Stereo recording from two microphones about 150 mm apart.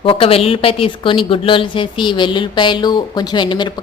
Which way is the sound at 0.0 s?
40° left (ahead or behind).